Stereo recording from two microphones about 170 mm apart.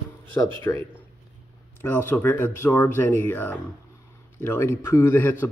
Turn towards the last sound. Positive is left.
turn(degrees=10)  # may be behind; listen again after turning